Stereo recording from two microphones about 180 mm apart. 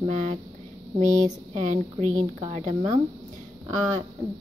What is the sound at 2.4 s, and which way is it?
Speech, 40° right (ahead or behind).